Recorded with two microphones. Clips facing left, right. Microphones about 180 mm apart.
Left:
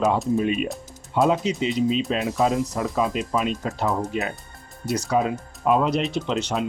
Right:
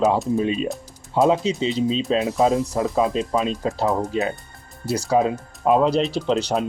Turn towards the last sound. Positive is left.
turn(degrees=-35)  # may be behind; listen again after turning